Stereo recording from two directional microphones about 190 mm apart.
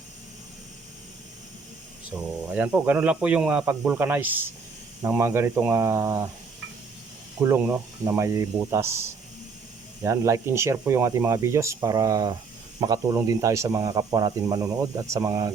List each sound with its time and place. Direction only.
2.1 s speech: 10° right (ahead or behind)
7.4 s speech: 10° right (ahead or behind)